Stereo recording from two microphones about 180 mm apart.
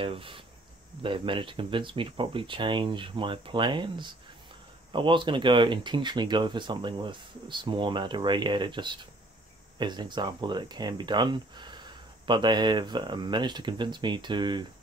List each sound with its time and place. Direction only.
0.0 s speech: 30° right (ahead or behind)